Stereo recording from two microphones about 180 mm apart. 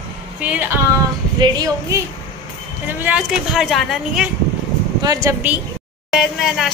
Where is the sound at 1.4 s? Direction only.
20° right (ahead or behind).